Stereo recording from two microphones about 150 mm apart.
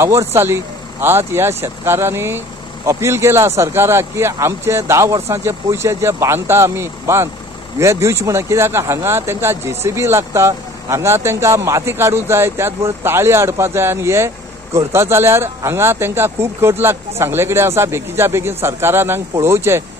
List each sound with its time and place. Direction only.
0.0 s speech: 15° right (ahead or behind)